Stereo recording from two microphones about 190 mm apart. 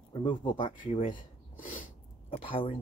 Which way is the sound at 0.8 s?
45° left (ahead or behind).